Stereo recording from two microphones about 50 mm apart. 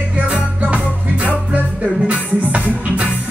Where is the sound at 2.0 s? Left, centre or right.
Right.